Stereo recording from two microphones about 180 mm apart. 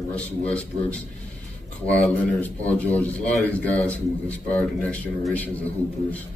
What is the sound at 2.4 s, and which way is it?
A man's voice, 10° left (ahead or behind).